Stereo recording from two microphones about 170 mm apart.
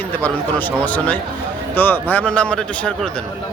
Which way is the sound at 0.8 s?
10° left (ahead or behind).